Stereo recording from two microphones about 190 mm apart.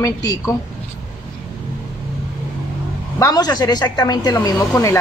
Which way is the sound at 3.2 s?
20° left (ahead or behind).